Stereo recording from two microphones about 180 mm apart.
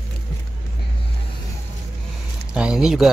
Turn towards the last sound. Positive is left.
turn(degrees=0)  # may be behind; listen again after turning